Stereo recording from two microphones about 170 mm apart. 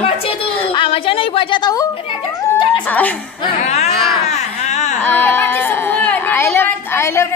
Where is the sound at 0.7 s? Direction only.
30° left (ahead or behind).